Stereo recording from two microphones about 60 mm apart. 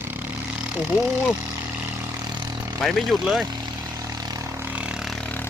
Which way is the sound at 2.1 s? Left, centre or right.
Right.